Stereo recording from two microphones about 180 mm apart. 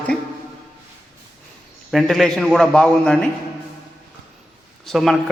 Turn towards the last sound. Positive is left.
turn(degrees=0)  # may be behind; listen again after turning